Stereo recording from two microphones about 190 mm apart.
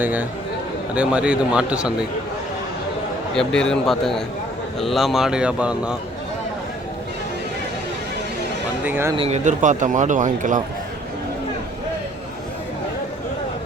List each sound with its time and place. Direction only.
0.0 s speech: 10° right (ahead or behind)
3.3 s speech: 5° left (ahead or behind)
8.8 s speech: 10° right (ahead or behind)
9.1 s speech: 35° right (ahead or behind)